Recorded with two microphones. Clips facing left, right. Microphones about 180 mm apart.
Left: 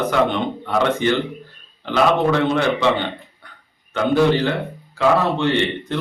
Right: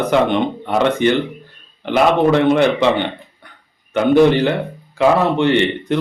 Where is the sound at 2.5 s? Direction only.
20° right (ahead or behind).